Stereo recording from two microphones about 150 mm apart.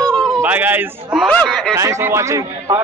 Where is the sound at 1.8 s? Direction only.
20° right (ahead or behind).